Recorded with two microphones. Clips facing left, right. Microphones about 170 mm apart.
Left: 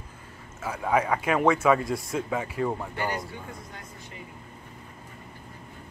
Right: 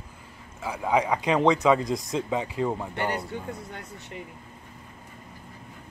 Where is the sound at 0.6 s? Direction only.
15° right (ahead or behind).